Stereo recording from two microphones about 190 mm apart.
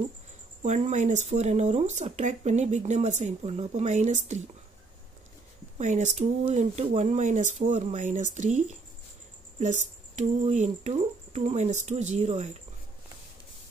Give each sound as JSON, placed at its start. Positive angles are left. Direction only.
{"t": 0.6, "sound": "speech", "side_deg": -40}
{"t": 5.8, "sound": "speech", "side_deg": -40}
{"t": 10.1, "sound": "speech", "side_deg": -40}